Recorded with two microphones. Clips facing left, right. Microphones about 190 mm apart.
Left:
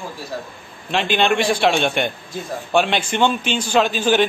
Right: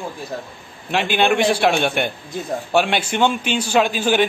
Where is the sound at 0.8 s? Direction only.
10° right (ahead or behind).